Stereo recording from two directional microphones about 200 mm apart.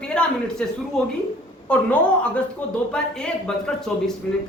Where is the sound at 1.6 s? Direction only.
5° left (ahead or behind).